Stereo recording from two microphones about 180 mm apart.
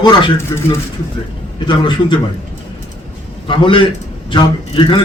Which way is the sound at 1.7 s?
25° left (ahead or behind).